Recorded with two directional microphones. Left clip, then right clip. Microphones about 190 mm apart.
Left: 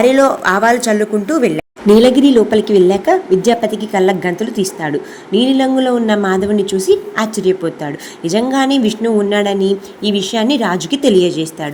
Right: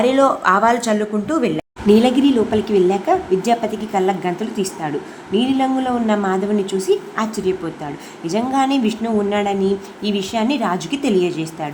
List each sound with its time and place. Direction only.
0.0 s speech: 15° left (ahead or behind)